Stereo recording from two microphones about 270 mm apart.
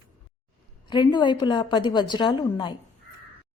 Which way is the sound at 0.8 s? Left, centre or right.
Centre.